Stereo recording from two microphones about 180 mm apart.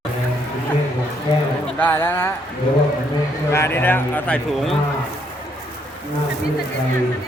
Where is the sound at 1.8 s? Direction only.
10° left (ahead or behind).